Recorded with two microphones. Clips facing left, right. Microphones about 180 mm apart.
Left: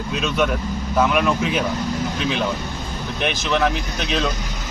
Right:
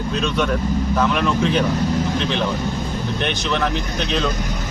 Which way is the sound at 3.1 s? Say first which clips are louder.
Left 3 dB; 5° left (ahead or behind).